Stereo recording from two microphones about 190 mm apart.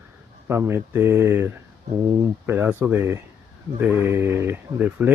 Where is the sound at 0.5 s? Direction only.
15° right (ahead or behind).